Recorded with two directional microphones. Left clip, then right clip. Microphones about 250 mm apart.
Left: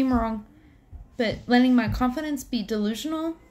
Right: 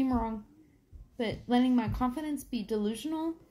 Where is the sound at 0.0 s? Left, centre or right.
Centre.